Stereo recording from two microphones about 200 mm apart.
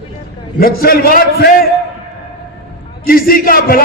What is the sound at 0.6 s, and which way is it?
Speech, 50° left (ahead or behind).